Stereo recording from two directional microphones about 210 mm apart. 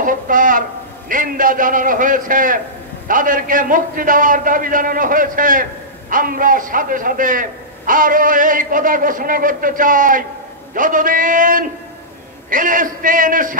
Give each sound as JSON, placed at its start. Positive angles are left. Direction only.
{"t": 0.0, "sound": "a man's voice", "side_deg": -40}